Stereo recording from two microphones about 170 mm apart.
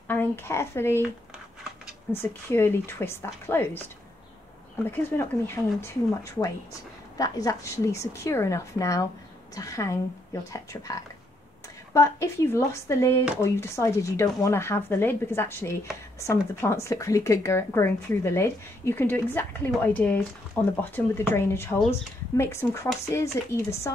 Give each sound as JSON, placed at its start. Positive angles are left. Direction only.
{"t": 0.1, "sound": "speech", "side_deg": 10}
{"t": 2.2, "sound": "speech", "side_deg": 15}
{"t": 4.9, "sound": "speech", "side_deg": 15}
{"t": 7.2, "sound": "a woman's voice", "side_deg": 20}